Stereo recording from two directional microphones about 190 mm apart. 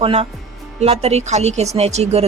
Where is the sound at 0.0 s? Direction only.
35° right (ahead or behind).